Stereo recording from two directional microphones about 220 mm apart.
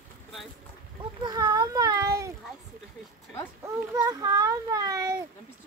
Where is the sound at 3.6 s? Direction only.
15° right (ahead or behind).